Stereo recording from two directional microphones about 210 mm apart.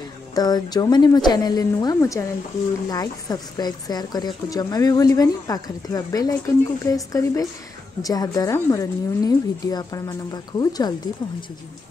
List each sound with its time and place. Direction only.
0.3 s a woman's voice: 20° left (ahead or behind)